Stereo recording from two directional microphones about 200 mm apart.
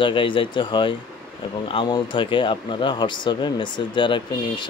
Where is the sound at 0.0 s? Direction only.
25° left (ahead or behind).